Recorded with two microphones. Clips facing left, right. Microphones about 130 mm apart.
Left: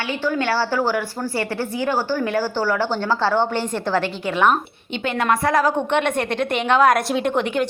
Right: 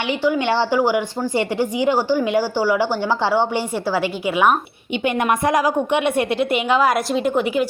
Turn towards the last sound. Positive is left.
turn(degrees=-5)  # may be behind; listen again after turning